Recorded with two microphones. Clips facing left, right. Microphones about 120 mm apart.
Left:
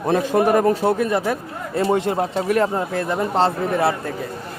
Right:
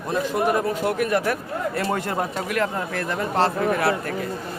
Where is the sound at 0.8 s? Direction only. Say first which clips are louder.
Left 3 dB; 30° left (ahead or behind).